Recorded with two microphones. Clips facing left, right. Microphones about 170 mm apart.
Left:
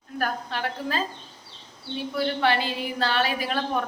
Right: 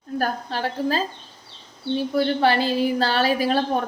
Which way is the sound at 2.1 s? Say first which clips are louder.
Right 3 dB; 35° right (ahead or behind).